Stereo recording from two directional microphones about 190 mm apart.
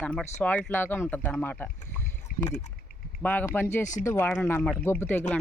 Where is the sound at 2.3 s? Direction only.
50° left (ahead or behind).